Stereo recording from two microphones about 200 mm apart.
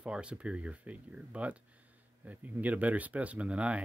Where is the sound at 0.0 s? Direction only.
5° right (ahead or behind).